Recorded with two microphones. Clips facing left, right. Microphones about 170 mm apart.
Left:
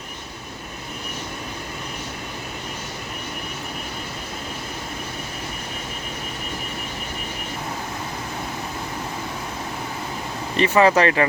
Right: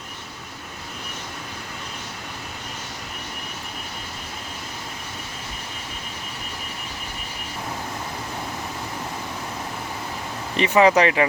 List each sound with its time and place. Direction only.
10.6 s speech: 15° right (ahead or behind)